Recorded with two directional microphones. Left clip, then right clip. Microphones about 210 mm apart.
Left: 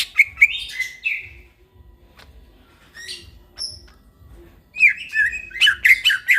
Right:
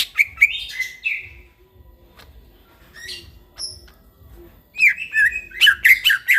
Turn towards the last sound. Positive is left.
turn(degrees=5)  # may be behind; listen again after turning